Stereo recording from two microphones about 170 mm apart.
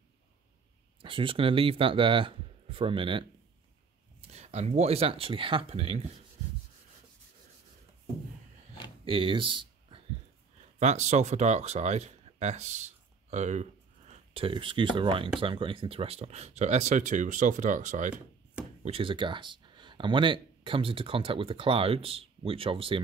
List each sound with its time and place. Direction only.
1.0 s speech: 30° right (ahead or behind)
4.3 s speech: 40° right (ahead or behind)
9.0 s a sound: 30° right (ahead or behind)
10.8 s speech: 40° right (ahead or behind)
14.3 s speech: 30° right (ahead or behind); by 18.1 s 45° right (ahead or behind)
18.1 s chopping: 5° right (ahead or behind)
18.9 s speech: 30° right (ahead or behind)